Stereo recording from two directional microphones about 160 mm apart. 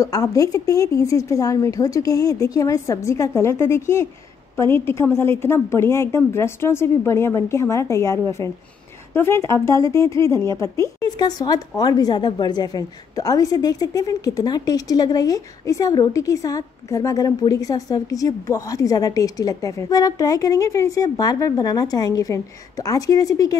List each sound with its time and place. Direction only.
0.0 s a woman's voice: 20° left (ahead or behind)